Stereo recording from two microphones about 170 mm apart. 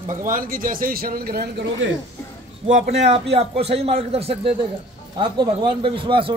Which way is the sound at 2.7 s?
40° right (ahead or behind).